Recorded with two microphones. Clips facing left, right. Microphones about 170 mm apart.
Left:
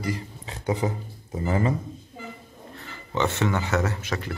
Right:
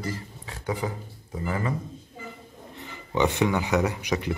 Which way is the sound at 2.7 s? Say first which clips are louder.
Right 2 dB; 15° right (ahead or behind).